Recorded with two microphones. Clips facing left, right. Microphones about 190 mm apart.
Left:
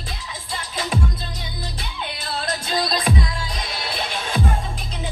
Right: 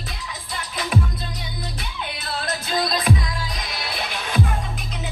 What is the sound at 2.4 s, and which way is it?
Music, 30° left (ahead or behind).